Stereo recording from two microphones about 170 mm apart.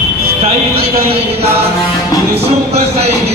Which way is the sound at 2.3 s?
35° right (ahead or behind).